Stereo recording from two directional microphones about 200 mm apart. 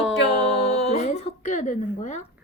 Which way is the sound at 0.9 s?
35° left (ahead or behind).